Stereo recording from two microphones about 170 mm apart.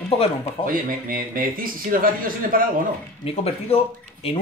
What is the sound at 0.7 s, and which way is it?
Speech, 55° right (ahead or behind).